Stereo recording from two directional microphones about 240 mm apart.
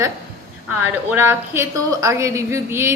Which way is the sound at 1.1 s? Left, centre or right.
Centre.